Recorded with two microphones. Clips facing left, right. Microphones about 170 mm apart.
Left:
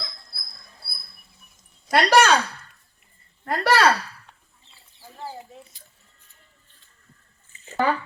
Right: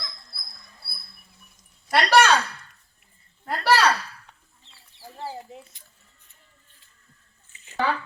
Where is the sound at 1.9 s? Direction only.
40° left (ahead or behind).